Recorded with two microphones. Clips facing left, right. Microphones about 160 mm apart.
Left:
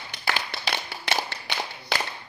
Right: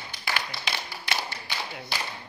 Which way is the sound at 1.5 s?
70° left (ahead or behind).